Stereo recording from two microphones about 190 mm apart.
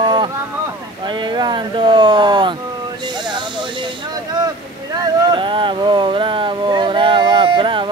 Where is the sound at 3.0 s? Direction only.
25° right (ahead or behind).